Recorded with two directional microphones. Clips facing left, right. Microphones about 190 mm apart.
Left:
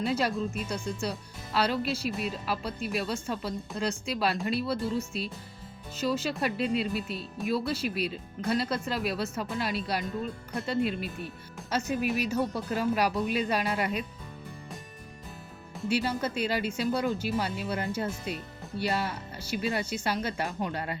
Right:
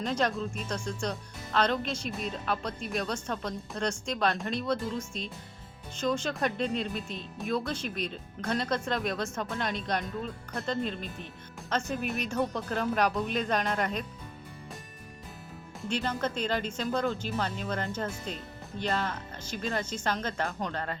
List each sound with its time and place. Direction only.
0.0 s speech: 10° left (ahead or behind)
15.9 s speech: 10° left (ahead or behind)